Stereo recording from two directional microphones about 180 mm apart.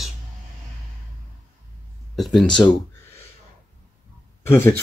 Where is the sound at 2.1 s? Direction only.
Centre (ahead or behind).